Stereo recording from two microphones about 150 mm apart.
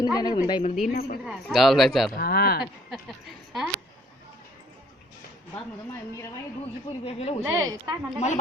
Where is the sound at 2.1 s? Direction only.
90° left.